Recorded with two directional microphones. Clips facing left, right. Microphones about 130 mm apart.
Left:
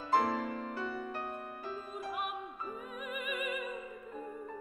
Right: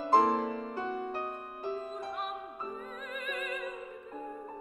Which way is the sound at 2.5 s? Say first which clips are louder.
Right 2 dB; 35° right (ahead or behind).